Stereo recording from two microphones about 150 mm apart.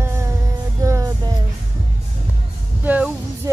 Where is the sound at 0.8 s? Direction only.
20° right (ahead or behind).